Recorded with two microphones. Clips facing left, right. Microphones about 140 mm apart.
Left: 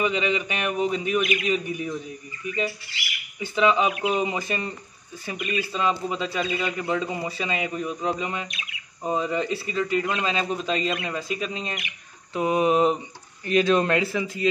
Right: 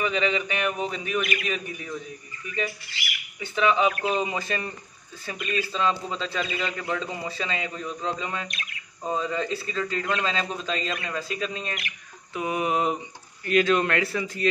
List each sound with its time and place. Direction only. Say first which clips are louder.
0.0 s a man's voice: left 1 dB; 15° left (ahead or behind)
3.5 s a man's voice: left 1 dB; 15° left (ahead or behind)
12.4 s a sound: left 5 dB; 25° left (ahead or behind)
14.1 s a man's voice: left 1 dB; 15° left (ahead or behind)